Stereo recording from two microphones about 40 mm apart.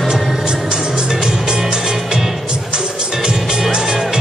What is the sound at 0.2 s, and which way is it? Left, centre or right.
Music, centre.